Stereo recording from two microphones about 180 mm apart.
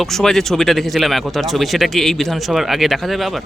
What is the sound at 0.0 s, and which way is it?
Speech, centre (ahead or behind).